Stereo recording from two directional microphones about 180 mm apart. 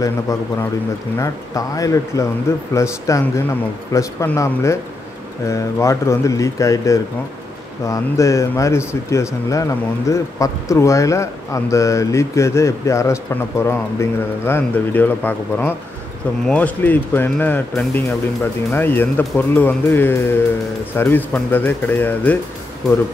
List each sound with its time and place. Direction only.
0.0 s speech: 15° left (ahead or behind)